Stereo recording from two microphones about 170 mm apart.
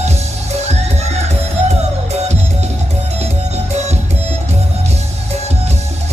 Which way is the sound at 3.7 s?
40° right (ahead or behind).